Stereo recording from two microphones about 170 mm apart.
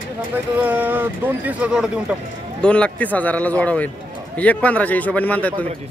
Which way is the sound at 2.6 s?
5° left (ahead or behind).